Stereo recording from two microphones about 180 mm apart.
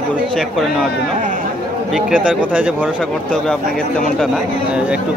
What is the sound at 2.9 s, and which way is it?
Speech, 5° left (ahead or behind).